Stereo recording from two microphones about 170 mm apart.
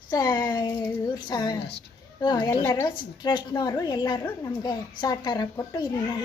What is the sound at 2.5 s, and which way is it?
Speech, 15° left (ahead or behind).